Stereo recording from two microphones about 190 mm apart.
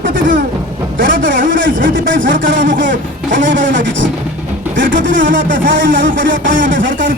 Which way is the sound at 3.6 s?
75° right (ahead or behind).